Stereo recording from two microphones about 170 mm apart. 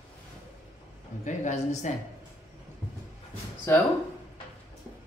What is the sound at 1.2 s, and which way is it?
Speech, 45° left (ahead or behind).